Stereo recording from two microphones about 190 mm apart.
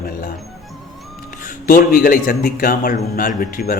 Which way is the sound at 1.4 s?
45° left (ahead or behind).